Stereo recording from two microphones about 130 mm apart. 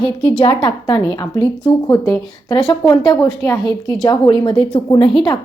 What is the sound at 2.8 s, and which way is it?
Speech, 30° left (ahead or behind).